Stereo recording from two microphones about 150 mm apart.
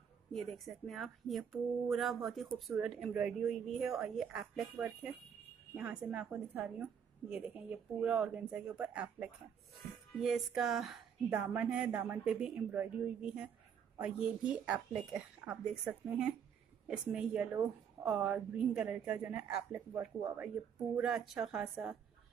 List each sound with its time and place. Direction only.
0.3 s a woman's voice: centre (ahead or behind)
11.2 s a woman's voice: 20° right (ahead or behind)